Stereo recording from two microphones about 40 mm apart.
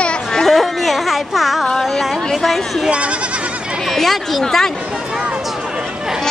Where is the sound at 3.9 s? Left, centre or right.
Centre.